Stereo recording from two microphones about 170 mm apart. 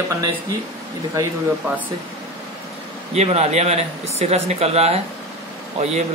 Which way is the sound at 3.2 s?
40° right (ahead or behind).